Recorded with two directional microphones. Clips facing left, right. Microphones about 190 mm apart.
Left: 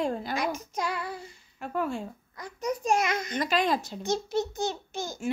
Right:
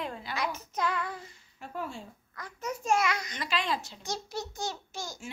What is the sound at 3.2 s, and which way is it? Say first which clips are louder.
Speech: left 7 dB; 50° left (ahead or behind).